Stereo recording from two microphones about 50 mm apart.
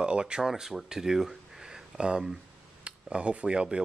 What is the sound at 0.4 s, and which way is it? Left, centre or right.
Speech, centre.